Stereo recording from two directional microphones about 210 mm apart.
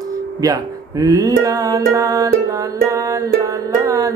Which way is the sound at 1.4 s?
15° right (ahead or behind).